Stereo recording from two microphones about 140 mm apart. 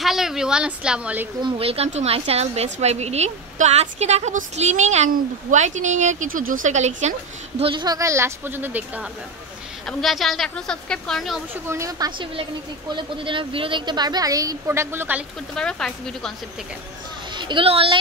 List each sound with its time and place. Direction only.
0.0 s a woman's voice: centre (ahead or behind)
1.4 s a woman's voice: 45° right (ahead or behind)
7.7 s a woman's voice: 30° right (ahead or behind); by 9.0 s 15° right (ahead or behind)
9.8 s a woman's voice: centre (ahead or behind)
11.6 s a woman's voice: 20° right (ahead or behind)
12.9 s a woman's voice: 35° right (ahead or behind); by 15.2 s 15° right (ahead or behind)
15.5 s a woman's voice: 5° left (ahead or behind)
17.4 s speech: 35° right (ahead or behind)